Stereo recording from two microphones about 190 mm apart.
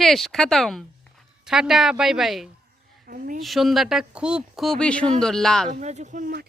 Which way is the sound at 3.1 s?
45° right (ahead or behind).